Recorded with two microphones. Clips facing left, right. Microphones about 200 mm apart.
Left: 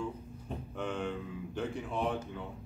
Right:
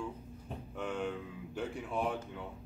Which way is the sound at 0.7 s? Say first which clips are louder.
Left 1 dB; 5° right (ahead or behind).